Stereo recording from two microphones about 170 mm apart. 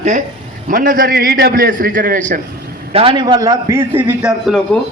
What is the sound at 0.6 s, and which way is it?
A man's voice, 55° right (ahead or behind).